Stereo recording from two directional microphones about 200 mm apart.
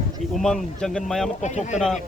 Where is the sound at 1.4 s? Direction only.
35° left (ahead or behind).